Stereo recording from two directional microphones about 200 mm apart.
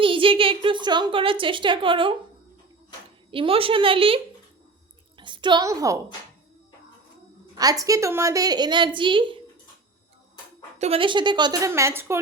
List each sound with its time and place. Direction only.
0.0 s a woman's voice: 25° right (ahead or behind)
3.3 s a woman's voice: 25° right (ahead or behind)
7.6 s a woman's voice: 15° right (ahead or behind)
10.8 s a woman's voice: 30° right (ahead or behind); by 12.2 s 15° right (ahead or behind)